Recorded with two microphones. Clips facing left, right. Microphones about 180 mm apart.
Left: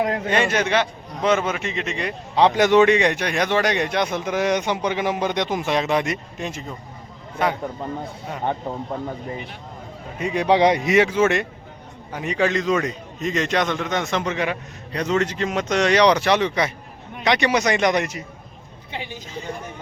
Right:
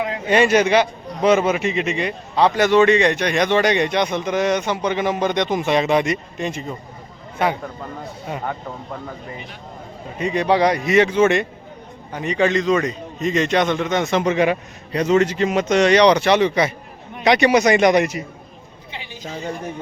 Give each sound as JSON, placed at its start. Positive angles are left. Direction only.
{"t": 0.3, "sound": "a man's voice", "side_deg": -10}
{"t": 2.3, "sound": "a man's voice", "side_deg": 15}
{"t": 8.4, "sound": "speech", "side_deg": 25}
{"t": 10.2, "sound": "a man's voice", "side_deg": 5}
{"t": 14.3, "sound": "a man's voice", "side_deg": -15}
{"t": 14.9, "sound": "a man's voice", "side_deg": -5}